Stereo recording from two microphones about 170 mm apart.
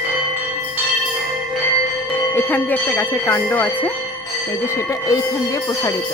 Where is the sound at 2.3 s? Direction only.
10° left (ahead or behind).